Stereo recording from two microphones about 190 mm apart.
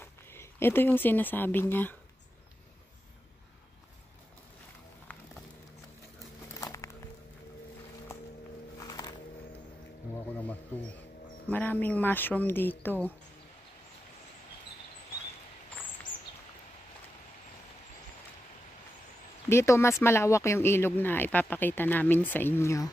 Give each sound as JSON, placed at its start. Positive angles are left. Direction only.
{"t": 0.0, "sound": "speech", "side_deg": 10}
{"t": 6.6, "sound": "music", "side_deg": 15}
{"t": 8.7, "sound": "music", "side_deg": 20}
{"t": 10.1, "sound": "a sound", "side_deg": 10}
{"t": 19.5, "sound": "speech", "side_deg": 15}